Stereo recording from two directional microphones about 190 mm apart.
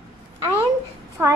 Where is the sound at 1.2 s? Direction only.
10° right (ahead or behind).